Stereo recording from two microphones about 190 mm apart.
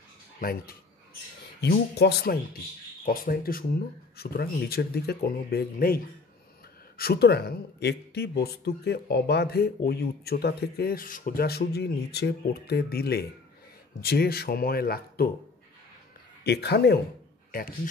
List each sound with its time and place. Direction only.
0.4 s speech: 50° left (ahead or behind)
3.1 s speech: 50° left (ahead or behind)
7.0 s speech: 55° left (ahead or behind)
16.4 s speech: 60° left (ahead or behind)